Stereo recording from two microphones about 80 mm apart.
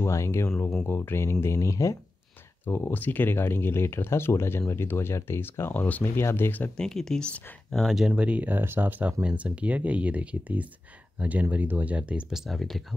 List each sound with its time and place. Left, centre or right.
0.0 s speech: left
2.6 s speech: left
6.8 s speech: centre
8.1 s speech: centre
12.3 s speech: centre